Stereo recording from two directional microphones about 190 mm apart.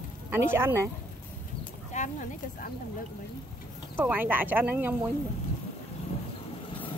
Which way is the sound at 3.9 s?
10° right (ahead or behind).